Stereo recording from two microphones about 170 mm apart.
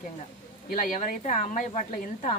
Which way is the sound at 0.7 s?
55° left (ahead or behind).